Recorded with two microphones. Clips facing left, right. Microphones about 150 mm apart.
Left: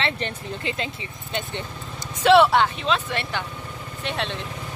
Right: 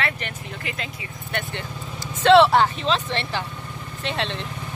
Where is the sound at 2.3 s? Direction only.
Centre (ahead or behind).